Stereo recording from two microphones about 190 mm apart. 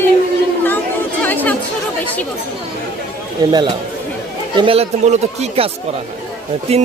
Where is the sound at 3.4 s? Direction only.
20° right (ahead or behind).